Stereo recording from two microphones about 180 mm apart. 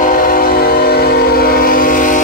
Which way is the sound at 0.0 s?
50° left (ahead or behind).